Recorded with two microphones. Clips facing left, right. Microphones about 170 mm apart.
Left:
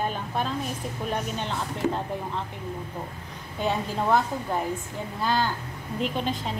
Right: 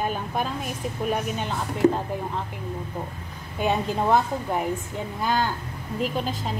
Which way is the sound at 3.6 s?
15° right (ahead or behind).